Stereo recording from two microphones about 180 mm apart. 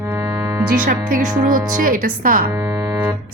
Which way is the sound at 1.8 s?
50° right (ahead or behind).